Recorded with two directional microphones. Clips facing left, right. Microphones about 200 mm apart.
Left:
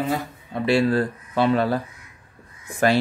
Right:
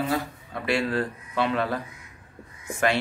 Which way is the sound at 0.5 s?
30° left (ahead or behind).